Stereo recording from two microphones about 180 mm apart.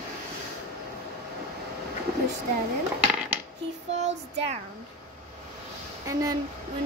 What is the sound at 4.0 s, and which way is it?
Speech, 40° right (ahead or behind).